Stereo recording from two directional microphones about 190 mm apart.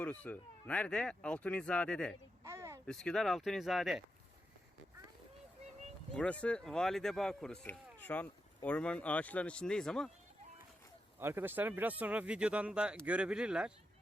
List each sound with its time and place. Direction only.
0.0 s speech: 5° left (ahead or behind)
2.4 s a sound: 15° right (ahead or behind)
2.8 s speech: 5° left (ahead or behind)
6.1 s speech: 5° left (ahead or behind)
11.2 s speech: 10° right (ahead or behind)